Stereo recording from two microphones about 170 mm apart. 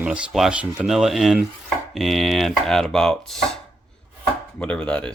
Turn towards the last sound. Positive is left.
turn(degrees=5)  # may be behind; listen again after turning